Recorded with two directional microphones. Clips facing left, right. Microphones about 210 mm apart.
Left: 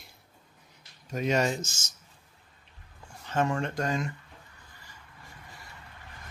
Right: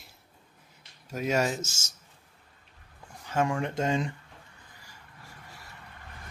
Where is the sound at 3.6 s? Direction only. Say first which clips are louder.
Right 2 dB; 25° right (ahead or behind).